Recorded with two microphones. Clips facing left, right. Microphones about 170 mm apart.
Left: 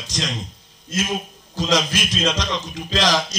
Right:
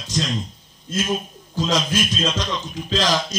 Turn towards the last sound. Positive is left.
turn(degrees=90)